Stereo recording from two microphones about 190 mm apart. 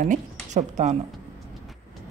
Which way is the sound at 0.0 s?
40° right (ahead or behind).